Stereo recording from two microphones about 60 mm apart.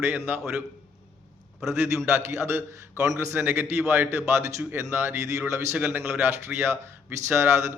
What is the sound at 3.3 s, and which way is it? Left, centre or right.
A man's voice, right.